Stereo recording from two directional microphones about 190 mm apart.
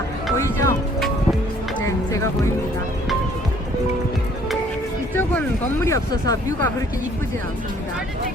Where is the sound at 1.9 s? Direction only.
15° left (ahead or behind).